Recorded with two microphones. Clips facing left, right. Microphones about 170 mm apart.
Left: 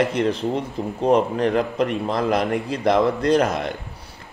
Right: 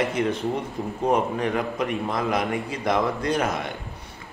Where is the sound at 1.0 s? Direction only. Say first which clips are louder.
Left 5 dB; 30° left (ahead or behind).